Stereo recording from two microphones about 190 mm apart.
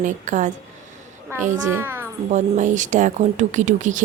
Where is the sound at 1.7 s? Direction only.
10° right (ahead or behind).